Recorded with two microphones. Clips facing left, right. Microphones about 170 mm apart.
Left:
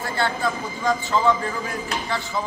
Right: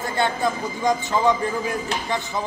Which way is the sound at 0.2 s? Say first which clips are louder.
Right 2 dB; 20° right (ahead or behind).